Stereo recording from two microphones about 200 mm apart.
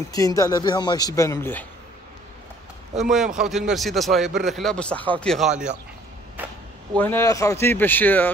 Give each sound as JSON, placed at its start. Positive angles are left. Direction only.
{"t": 0.1, "sound": "speech", "side_deg": 15}
{"t": 3.0, "sound": "speech", "side_deg": 0}
{"t": 7.0, "sound": "speech", "side_deg": 10}